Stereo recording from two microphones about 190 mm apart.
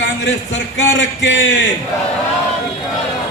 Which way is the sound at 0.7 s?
70° left (ahead or behind).